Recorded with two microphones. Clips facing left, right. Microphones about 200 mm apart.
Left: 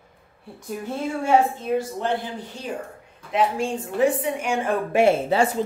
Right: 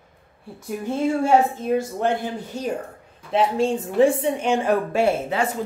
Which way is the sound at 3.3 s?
25° right (ahead or behind).